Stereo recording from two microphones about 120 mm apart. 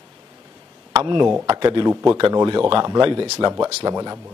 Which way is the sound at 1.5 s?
35° right (ahead or behind).